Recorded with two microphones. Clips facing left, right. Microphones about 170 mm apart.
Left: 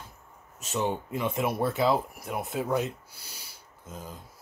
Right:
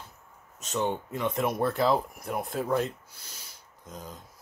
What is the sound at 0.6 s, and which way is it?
Speech, 5° left (ahead or behind).